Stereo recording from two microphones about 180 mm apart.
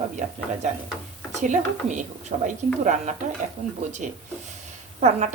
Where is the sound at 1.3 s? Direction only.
40° right (ahead or behind).